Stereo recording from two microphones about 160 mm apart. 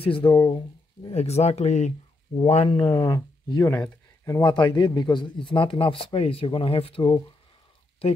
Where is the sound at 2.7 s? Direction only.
25° left (ahead or behind).